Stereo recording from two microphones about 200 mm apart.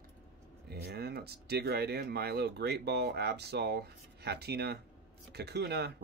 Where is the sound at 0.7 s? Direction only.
55° right (ahead or behind).